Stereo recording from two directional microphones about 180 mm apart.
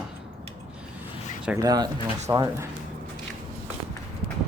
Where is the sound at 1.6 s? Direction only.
20° right (ahead or behind).